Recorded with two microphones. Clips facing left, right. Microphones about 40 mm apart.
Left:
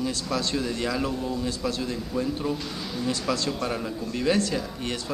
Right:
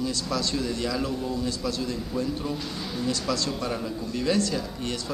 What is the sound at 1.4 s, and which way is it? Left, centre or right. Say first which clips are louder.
Speech: even; left.